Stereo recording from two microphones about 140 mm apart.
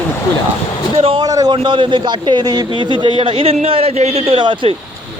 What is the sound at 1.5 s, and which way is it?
A man's voice, 35° right (ahead or behind).